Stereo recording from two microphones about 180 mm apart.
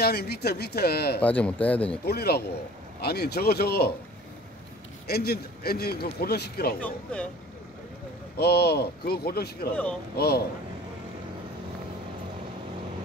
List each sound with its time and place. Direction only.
0.0 s a man's voice: 60° left (ahead or behind)
1.2 s speech: 10° left (ahead or behind)
2.0 s a man's voice: 60° left (ahead or behind)
5.0 s a man's voice: 60° left (ahead or behind)
6.8 s speech: 5° left (ahead or behind)
8.4 s a man's voice: 60° left (ahead or behind)